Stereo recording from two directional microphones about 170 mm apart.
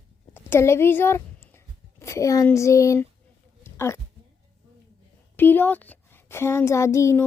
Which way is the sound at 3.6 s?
15° left (ahead or behind).